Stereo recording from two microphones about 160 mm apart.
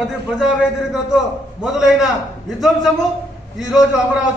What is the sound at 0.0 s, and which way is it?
A man's voice, 5° right (ahead or behind).